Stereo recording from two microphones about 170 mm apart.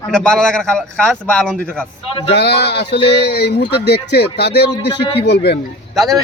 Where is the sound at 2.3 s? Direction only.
80° left.